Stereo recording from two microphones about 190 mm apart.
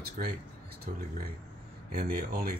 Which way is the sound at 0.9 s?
45° right (ahead or behind).